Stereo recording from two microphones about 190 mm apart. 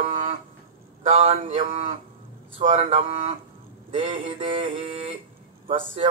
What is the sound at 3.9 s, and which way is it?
Male singing, 30° right (ahead or behind).